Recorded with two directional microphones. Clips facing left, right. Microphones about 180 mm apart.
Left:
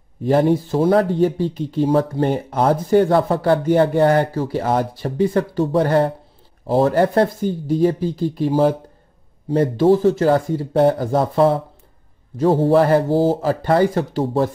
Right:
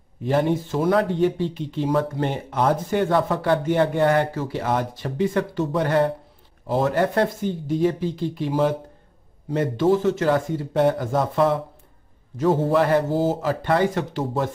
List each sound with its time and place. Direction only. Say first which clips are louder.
0.2 s speech: left 5 dB; 35° left (ahead or behind)